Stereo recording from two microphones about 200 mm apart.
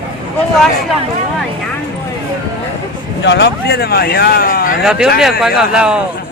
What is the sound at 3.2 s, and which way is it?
Speech, 60° left (ahead or behind).